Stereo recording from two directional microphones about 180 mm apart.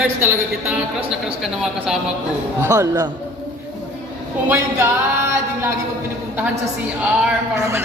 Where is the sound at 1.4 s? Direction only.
Centre (ahead or behind).